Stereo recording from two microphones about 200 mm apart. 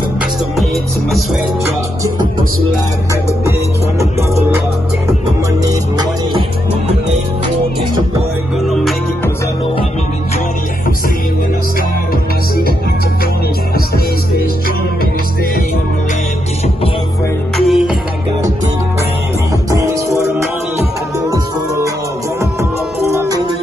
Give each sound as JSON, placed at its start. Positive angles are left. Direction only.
{"t": 17.6, "sound": "music", "side_deg": 0}
{"t": 19.7, "sound": "music", "side_deg": -15}
{"t": 21.3, "sound": "music", "side_deg": -15}